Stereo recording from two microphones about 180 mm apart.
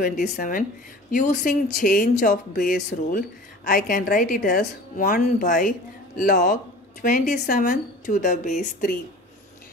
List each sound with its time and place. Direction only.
0.0 s speech: 45° left (ahead or behind)